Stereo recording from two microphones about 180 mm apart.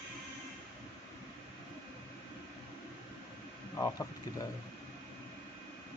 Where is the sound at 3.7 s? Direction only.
20° left (ahead or behind).